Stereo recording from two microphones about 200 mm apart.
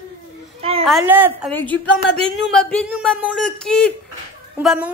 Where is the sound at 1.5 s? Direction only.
10° left (ahead or behind).